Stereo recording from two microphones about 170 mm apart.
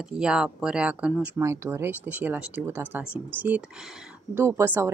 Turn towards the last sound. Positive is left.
turn(degrees=-15)  # may be behind; listen again after turning